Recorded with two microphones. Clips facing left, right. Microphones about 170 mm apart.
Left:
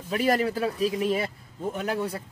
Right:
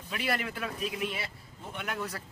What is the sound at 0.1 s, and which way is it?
A man's voice, 40° left (ahead or behind).